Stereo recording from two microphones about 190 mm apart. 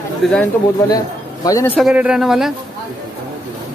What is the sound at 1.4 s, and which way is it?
Speech, 15° left (ahead or behind).